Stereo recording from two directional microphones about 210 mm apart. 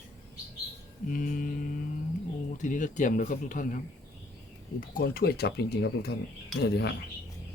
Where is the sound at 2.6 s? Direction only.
35° left (ahead or behind).